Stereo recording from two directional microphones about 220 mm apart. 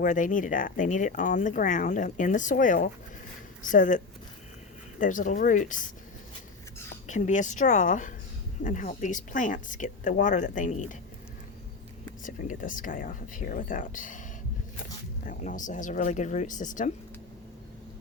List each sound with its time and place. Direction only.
0.0 s speech: 35° left (ahead or behind)
7.1 s speech: 35° left (ahead or behind)
12.2 s speech: 35° left (ahead or behind)
15.2 s speech: 35° left (ahead or behind)